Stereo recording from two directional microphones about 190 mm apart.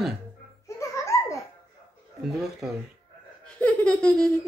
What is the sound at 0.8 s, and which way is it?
Laughter, 15° left (ahead or behind).